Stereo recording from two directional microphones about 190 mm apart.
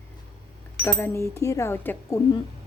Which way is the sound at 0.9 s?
15° left (ahead or behind).